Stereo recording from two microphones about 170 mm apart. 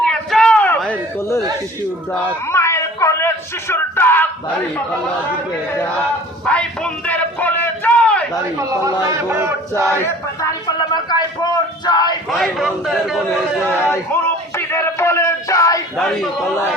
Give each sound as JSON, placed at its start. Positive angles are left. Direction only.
{"t": 0.0, "sound": "a sound", "side_deg": 5}
{"t": 6.4, "sound": "a sound", "side_deg": 5}
{"t": 9.0, "sound": "battle cry", "side_deg": -15}
{"t": 9.8, "sound": "speech", "side_deg": 15}
{"t": 12.3, "sound": "a man's voice", "side_deg": 0}
{"t": 13.8, "sound": "music", "side_deg": 15}
{"t": 16.0, "sound": "a man's voice", "side_deg": 0}